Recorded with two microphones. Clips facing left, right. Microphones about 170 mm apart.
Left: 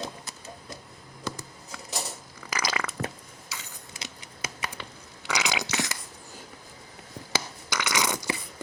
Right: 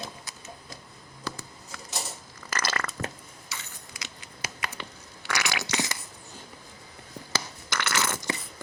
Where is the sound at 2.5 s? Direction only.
10° left (ahead or behind).